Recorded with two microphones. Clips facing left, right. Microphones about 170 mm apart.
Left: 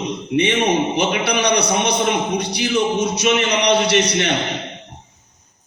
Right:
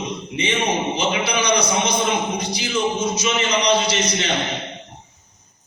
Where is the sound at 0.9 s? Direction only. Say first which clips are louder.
Left 3 dB; 70° left (ahead or behind).